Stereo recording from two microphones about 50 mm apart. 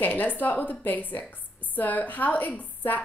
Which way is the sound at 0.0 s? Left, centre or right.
Left.